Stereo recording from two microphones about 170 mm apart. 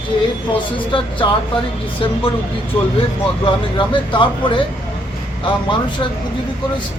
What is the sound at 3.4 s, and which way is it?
Speech, 30° left (ahead or behind).